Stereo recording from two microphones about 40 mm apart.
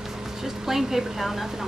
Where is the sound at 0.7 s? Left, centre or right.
Centre.